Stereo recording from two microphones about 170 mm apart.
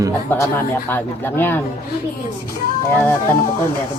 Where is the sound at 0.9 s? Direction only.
10° left (ahead or behind).